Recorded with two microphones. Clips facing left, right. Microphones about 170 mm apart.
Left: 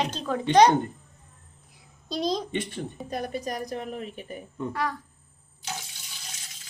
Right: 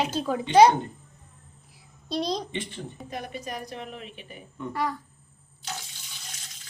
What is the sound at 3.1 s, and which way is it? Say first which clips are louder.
A woman's voice: left 4 dB; 40° left (ahead or behind).